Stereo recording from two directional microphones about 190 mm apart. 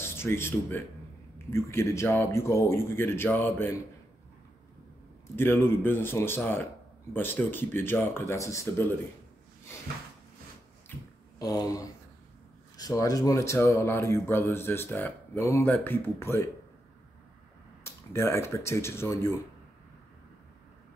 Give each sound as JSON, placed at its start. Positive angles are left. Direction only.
{"t": 0.0, "sound": "speech", "side_deg": 15}
{"t": 5.3, "sound": "speech", "side_deg": 10}
{"t": 11.3, "sound": "speech", "side_deg": 20}
{"t": 17.8, "sound": "speech", "side_deg": 15}